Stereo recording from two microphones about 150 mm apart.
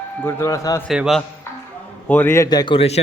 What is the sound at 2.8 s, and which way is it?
Speech, 45° left (ahead or behind).